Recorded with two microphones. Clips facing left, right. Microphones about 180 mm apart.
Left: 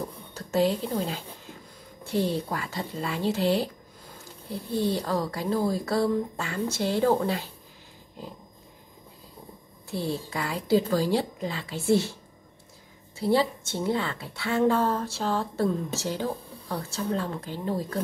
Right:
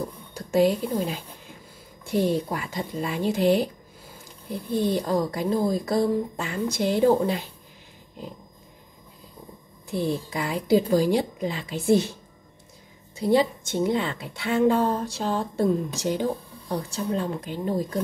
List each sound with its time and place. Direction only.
0.3 s a sound: 15° right (ahead or behind)
2.0 s a woman's voice: 15° right (ahead or behind)
9.8 s a woman's voice: 15° right (ahead or behind)